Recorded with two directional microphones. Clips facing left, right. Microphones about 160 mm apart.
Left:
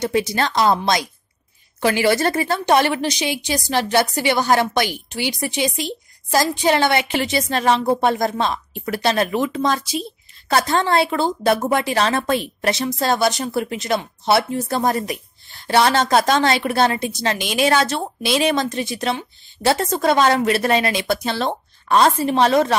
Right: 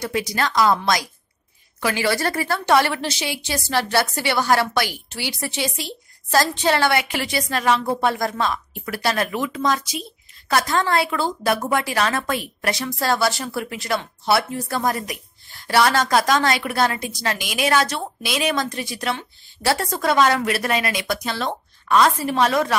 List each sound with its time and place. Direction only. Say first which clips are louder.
0.0 s speech: left 4 dB; 25° left (ahead or behind)